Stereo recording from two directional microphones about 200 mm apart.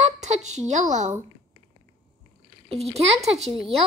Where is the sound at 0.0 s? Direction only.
35° right (ahead or behind).